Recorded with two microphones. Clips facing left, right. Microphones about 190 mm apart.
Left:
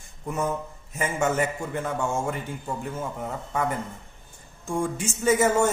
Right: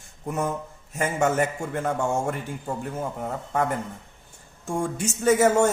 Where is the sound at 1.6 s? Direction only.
45° right (ahead or behind).